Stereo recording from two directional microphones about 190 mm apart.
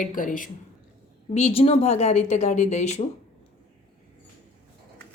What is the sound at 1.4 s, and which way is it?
Speech, 35° left (ahead or behind).